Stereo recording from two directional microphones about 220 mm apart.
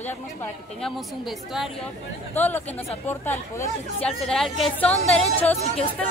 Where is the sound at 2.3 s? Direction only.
10° left (ahead or behind).